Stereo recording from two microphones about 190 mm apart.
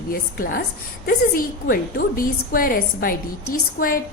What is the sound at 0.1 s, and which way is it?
A woman's voice, 50° left (ahead or behind).